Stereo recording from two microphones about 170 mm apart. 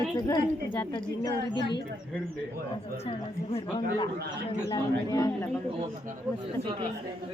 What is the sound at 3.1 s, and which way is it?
A woman's voice, 30° left (ahead or behind).